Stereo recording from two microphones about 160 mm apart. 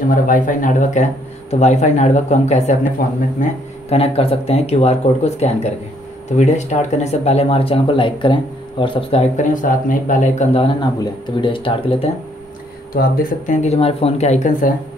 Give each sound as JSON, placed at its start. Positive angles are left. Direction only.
{"t": 0.1, "sound": "speech", "side_deg": 55}
{"t": 3.9, "sound": "speech", "side_deg": 40}
{"t": 12.9, "sound": "speech", "side_deg": 65}
{"t": 13.6, "sound": "speech", "side_deg": 40}